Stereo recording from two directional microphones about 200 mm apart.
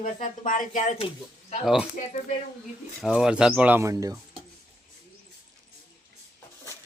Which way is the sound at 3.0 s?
5° right (ahead or behind).